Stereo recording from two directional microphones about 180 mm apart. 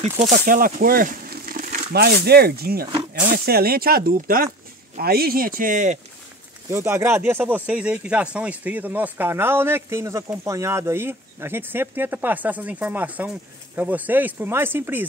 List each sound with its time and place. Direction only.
0.2 s speech: 45° right (ahead or behind)
6.7 s speech: 15° right (ahead or behind)